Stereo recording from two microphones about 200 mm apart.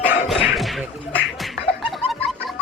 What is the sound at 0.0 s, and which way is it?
Whip, 10° right (ahead or behind).